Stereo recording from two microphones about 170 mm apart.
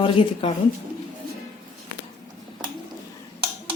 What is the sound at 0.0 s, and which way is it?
Speech, 30° left (ahead or behind).